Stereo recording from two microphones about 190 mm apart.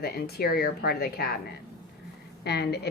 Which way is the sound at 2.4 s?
60° left (ahead or behind).